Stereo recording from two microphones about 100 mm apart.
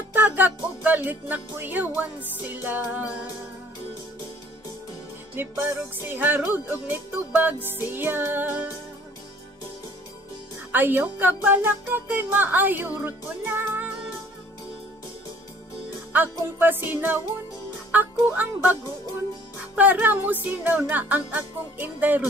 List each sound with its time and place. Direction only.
0.1 s music: 15° right (ahead or behind)
5.3 s speech: 20° right (ahead or behind)
10.7 s speech: 20° right (ahead or behind)
13.5 s music: 20° right (ahead or behind)
16.1 s speech: 20° right (ahead or behind)
17.9 s music: 15° right (ahead or behind)
21.7 s speech: 20° right (ahead or behind)